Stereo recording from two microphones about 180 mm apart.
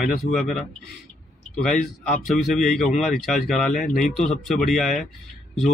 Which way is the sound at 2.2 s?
Centre (ahead or behind).